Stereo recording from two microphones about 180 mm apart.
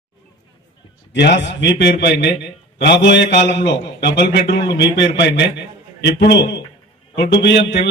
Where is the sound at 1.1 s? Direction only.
75° left (ahead or behind).